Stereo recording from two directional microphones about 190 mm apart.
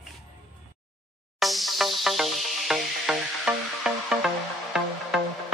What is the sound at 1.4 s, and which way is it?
Music, centre (ahead or behind).